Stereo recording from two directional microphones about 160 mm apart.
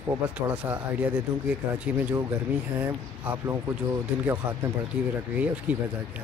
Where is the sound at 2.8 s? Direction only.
15° right (ahead or behind).